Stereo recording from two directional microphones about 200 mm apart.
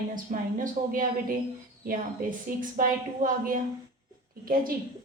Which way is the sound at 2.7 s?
40° right (ahead or behind).